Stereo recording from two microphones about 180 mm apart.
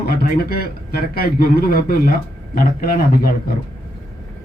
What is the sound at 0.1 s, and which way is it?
Speech, 55° left (ahead or behind).